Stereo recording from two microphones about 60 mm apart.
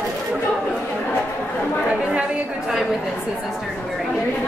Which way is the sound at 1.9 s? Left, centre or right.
Centre.